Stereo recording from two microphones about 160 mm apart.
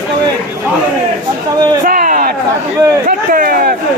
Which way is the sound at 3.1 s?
65° right (ahead or behind).